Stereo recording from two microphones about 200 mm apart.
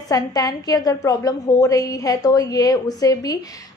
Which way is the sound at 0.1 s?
20° left (ahead or behind).